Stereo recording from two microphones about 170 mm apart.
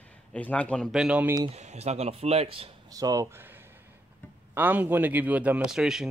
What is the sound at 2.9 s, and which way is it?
Speech, 20° right (ahead or behind).